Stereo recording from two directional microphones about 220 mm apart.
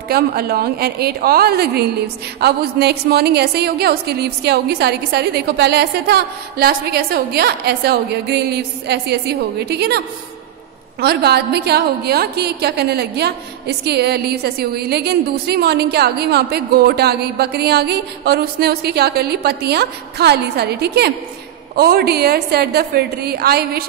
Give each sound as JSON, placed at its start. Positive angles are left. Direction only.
{"t": 0.1, "sound": "a woman's voice", "side_deg": -45}